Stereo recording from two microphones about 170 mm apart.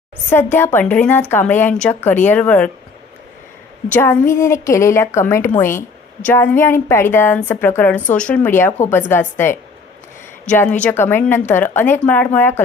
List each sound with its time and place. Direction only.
0.3 s a woman's voice: 15° left (ahead or behind)
3.9 s a woman's voice: 10° left (ahead or behind)